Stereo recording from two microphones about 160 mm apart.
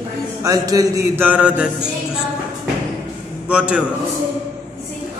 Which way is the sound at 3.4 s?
5° right (ahead or behind).